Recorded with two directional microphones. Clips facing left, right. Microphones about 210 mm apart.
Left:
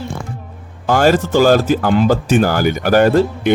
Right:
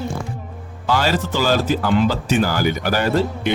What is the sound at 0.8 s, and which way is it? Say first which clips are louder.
A man's voice: left 7 dB; 50° left (ahead or behind).